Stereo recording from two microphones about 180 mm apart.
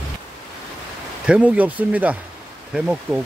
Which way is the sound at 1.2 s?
5° right (ahead or behind).